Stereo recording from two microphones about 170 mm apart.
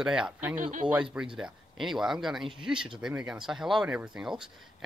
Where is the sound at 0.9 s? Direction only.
5° right (ahead or behind).